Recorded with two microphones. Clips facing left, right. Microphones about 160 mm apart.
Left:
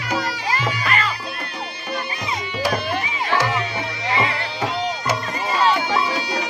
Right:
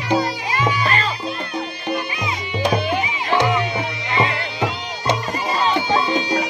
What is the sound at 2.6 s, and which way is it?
Music, 15° right (ahead or behind).